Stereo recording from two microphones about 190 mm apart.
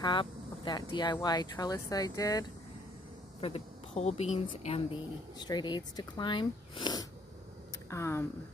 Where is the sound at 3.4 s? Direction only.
35° left (ahead or behind).